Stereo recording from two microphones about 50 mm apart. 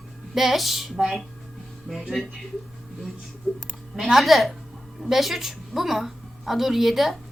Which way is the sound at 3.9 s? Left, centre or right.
Centre.